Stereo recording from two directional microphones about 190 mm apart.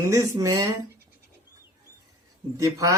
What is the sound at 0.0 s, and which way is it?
Speech, 15° right (ahead or behind).